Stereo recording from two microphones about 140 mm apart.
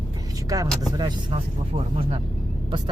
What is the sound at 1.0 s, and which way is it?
Speech, 30° right (ahead or behind).